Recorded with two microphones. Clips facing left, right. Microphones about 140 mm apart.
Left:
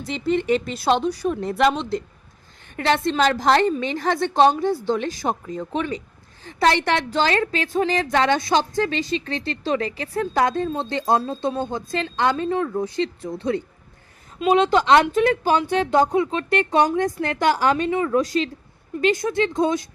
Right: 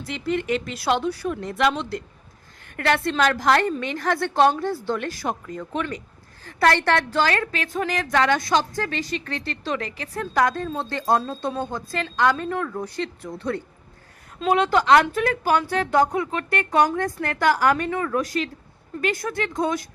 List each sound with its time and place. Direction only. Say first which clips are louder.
0.1 s speech: left 4 dB; 30° left (ahead or behind)
0.9 s speech: left 3 dB; 20° left (ahead or behind)
1.3 s speech: left 3 dB; 30° left (ahead or behind)
1.7 s speech: left 3 dB; 20° left (ahead or behind)